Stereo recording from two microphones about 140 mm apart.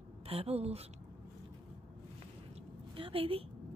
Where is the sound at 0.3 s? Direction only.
45° right (ahead or behind).